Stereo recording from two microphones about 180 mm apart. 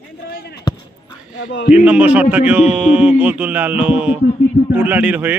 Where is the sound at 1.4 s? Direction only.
70° left (ahead or behind).